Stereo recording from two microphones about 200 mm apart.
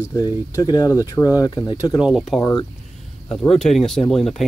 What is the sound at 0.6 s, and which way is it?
Speech, 20° left (ahead or behind).